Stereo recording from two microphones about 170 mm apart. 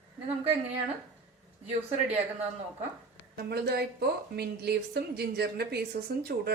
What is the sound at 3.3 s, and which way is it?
A woman's voice, 70° right (ahead or behind).